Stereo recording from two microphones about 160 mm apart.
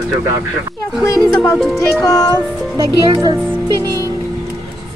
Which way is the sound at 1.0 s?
20° left (ahead or behind).